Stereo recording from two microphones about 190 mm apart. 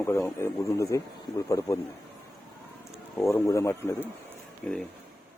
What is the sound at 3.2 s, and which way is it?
Speech, 15° left (ahead or behind).